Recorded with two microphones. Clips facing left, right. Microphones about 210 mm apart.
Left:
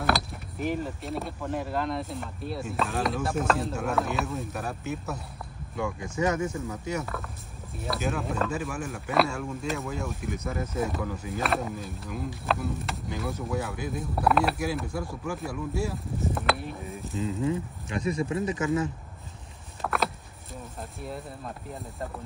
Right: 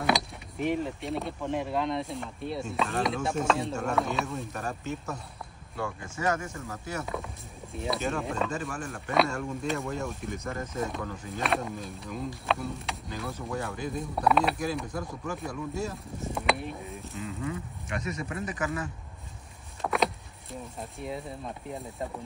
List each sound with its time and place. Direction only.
0.0 s speech: centre (ahead or behind)
6.1 s speech: 20° left (ahead or behind)
7.7 s speech: centre (ahead or behind)
17.2 s speech: 30° left (ahead or behind)
19.8 s vehicle: centre (ahead or behind)
21.0 s speech: centre (ahead or behind)